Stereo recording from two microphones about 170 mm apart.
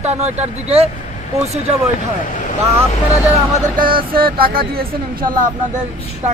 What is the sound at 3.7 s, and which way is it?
Speech, 55° right (ahead or behind).